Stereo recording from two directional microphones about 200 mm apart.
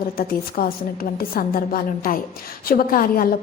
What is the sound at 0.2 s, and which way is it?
A woman's voice, 45° left (ahead or behind).